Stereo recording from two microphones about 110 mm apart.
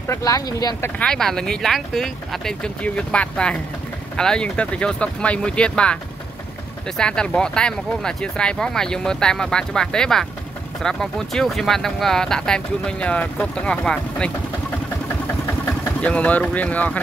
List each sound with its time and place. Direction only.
0.1 s speech: 30° left (ahead or behind)
0.8 s speech: 10° left (ahead or behind)
7.0 s speech: 10° left (ahead or behind)
16.0 s speech: 10° left (ahead or behind)